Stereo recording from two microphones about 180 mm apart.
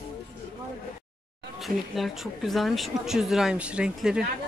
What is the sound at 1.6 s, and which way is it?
Speech, centre (ahead or behind).